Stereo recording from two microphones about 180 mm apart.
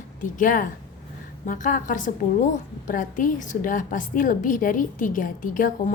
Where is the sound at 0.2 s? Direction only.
50° left (ahead or behind).